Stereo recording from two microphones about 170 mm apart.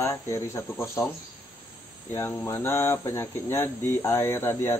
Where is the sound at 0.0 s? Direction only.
15° left (ahead or behind).